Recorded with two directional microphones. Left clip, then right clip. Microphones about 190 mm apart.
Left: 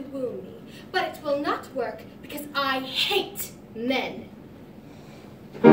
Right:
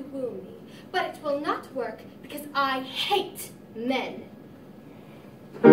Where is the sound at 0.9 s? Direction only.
Centre (ahead or behind).